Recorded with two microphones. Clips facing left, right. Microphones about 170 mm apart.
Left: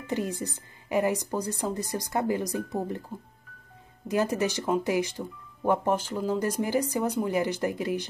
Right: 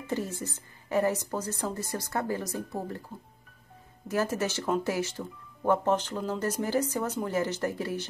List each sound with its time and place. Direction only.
0.0 s speech: 15° left (ahead or behind)
4.1 s speech: 15° left (ahead or behind)